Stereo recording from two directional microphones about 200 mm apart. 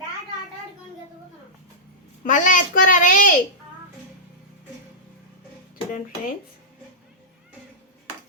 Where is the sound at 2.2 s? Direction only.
40° left (ahead or behind).